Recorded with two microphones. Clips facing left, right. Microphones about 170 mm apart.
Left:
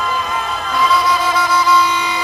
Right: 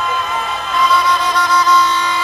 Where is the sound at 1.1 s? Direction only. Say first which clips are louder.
Even; 5° left (ahead or behind).